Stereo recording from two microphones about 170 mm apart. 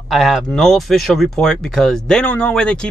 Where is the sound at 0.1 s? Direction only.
Centre (ahead or behind).